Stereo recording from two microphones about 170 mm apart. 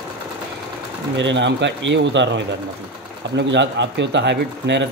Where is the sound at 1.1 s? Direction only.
90° right.